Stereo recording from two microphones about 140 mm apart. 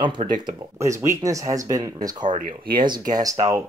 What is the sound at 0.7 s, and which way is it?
Speech, 20° right (ahead or behind).